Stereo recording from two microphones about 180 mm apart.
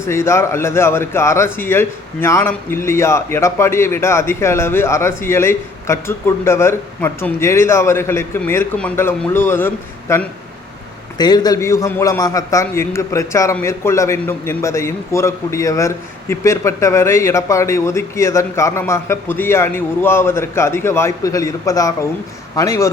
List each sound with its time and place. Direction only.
0.0 s a man's voice: 15° left (ahead or behind)
11.2 s a man's voice: 20° left (ahead or behind)